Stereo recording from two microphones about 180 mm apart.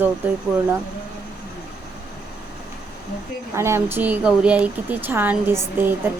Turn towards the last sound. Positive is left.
turn(degrees=-10)  # may be behind; listen again after turning